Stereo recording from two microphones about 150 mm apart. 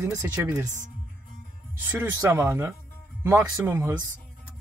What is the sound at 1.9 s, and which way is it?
Speech, 15° right (ahead or behind).